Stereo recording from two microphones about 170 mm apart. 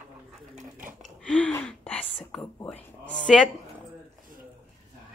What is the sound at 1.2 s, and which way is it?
Whispering, 5° left (ahead or behind).